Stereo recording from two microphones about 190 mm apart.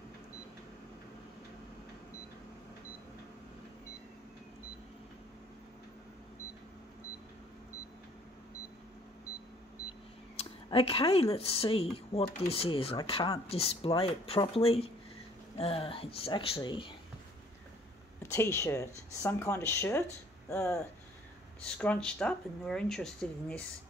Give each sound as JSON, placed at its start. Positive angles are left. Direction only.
{"t": 10.3, "sound": "speech", "side_deg": 30}
{"t": 18.2, "sound": "speech", "side_deg": 15}